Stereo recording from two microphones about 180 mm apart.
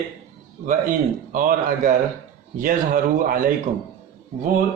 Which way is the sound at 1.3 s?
45° right (ahead or behind).